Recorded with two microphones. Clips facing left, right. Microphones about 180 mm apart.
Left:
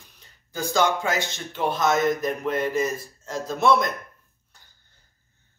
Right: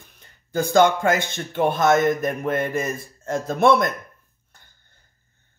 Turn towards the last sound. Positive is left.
turn(degrees=-55)  # may be behind; listen again after turning